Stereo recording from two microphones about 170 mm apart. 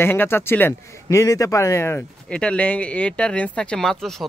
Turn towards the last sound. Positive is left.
turn(degrees=0)  # may be behind; listen again after turning